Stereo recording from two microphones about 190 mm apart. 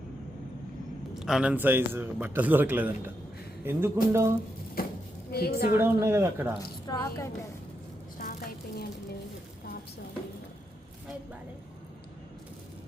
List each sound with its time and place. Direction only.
1.1 s a man's voice: 5° right (ahead or behind)
4.8 s a sound: 50° left (ahead or behind)
5.3 s a woman's voice: 55° left (ahead or behind)
5.7 s a man's voice: 15° right (ahead or behind)
6.8 s a woman's voice: 20° left (ahead or behind)
8.2 s a sound: 50° left (ahead or behind)